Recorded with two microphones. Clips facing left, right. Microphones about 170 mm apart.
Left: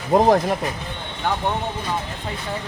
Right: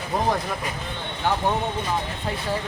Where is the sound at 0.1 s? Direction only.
40° left (ahead or behind).